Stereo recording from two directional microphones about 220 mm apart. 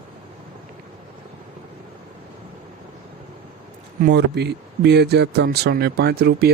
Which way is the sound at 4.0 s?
50° right (ahead or behind).